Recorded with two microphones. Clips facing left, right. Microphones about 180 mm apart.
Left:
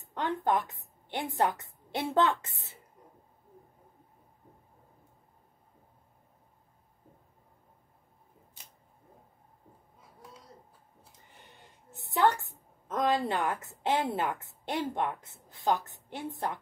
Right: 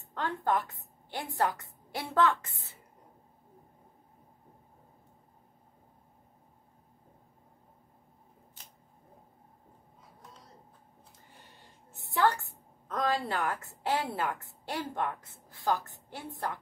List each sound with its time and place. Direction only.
0.0 s a woman's voice: 20° left (ahead or behind)
11.9 s a woman's voice: 20° left (ahead or behind)